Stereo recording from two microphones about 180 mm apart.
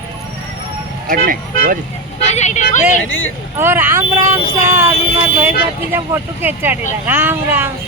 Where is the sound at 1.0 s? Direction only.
50° right (ahead or behind).